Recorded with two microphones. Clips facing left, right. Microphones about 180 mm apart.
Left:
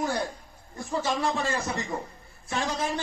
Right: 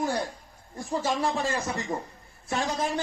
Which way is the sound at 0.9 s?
15° right (ahead or behind).